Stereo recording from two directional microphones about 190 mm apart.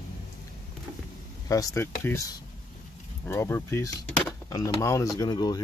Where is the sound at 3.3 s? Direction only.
15° left (ahead or behind).